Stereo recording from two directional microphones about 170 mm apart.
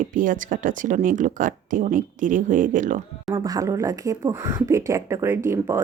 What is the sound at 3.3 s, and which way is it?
Speech, 20° right (ahead or behind).